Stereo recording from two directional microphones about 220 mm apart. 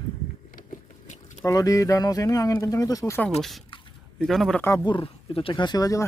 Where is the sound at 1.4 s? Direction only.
15° left (ahead or behind).